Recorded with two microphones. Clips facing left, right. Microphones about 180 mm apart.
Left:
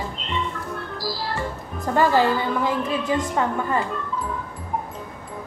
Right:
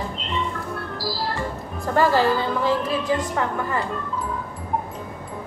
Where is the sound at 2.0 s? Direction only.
15° left (ahead or behind).